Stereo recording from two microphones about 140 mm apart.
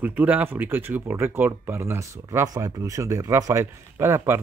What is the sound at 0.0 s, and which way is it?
Speech, 15° right (ahead or behind).